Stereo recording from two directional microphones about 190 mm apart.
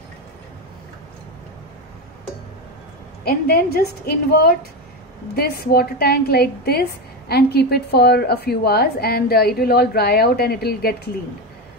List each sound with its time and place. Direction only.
3.3 s a woman's voice: 55° left (ahead or behind)